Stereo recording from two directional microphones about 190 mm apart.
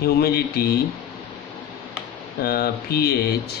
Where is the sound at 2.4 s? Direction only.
55° left (ahead or behind).